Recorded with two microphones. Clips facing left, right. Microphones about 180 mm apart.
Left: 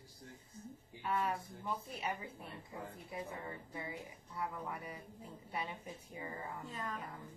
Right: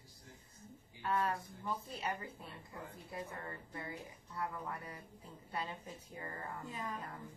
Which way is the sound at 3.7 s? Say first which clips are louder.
Left 1 dB; 10° left (ahead or behind).